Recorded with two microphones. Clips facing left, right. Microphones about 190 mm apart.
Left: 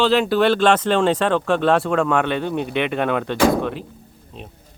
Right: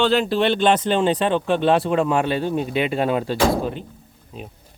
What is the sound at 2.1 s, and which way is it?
Speech, 30° right (ahead or behind).